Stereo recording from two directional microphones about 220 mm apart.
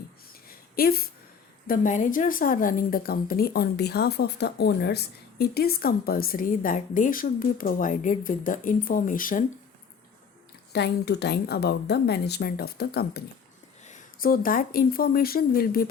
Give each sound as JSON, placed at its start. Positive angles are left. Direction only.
{"t": 0.4, "sound": "a sound", "side_deg": 45}
{"t": 1.6, "sound": "a woman's voice", "side_deg": 40}
{"t": 10.7, "sound": "a woman's voice", "side_deg": 50}